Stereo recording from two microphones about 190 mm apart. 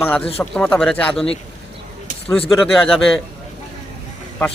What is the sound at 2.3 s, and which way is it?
Speech, centre (ahead or behind).